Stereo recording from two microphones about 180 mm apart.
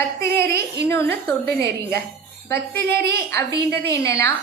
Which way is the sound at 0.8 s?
15° left (ahead or behind).